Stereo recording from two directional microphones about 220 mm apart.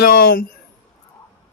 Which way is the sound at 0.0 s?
45° left (ahead or behind).